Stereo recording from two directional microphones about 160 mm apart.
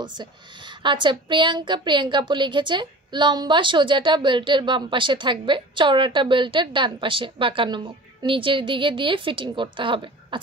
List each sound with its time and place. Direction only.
0.0 s a woman's voice: 30° right (ahead or behind)